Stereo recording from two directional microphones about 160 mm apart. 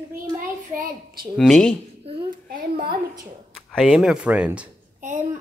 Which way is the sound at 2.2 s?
60° right (ahead or behind).